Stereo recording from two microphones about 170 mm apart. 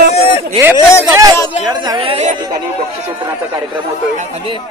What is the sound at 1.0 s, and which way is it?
Speech, 20° right (ahead or behind).